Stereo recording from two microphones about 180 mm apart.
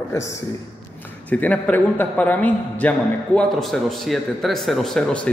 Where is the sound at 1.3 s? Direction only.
10° left (ahead or behind).